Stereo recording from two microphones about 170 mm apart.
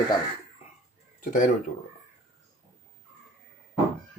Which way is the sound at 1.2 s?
50° left (ahead or behind).